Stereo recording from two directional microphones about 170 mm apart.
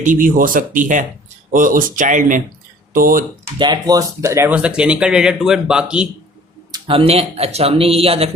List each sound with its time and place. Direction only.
0.0 s speech: 50° right (ahead or behind)
3.6 s speech: 25° right (ahead or behind); by 6.1 s 5° right (ahead or behind)
6.7 s a man's voice: 25° right (ahead or behind)